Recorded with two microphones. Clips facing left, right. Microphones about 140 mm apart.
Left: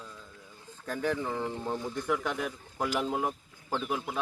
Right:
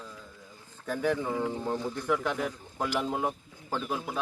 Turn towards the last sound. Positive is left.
turn(degrees=-5)  # may be behind; listen again after turning